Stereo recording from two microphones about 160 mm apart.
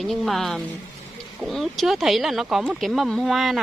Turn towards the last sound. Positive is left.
turn(degrees=0)  # may be behind; listen again after turning